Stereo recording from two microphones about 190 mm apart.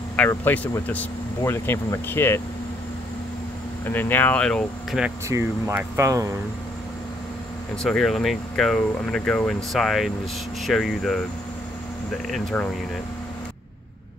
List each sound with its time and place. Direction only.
0.1 s speech: 10° left (ahead or behind)
3.8 s speech: 10° left (ahead or behind)
5.3 s speech: 15° right (ahead or behind)
7.8 s speech: centre (ahead or behind)
12.3 s speech: centre (ahead or behind)